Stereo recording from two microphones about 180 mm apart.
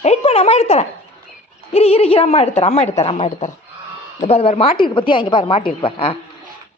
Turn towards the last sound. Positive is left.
turn(degrees=30)  # may be behind; listen again after turning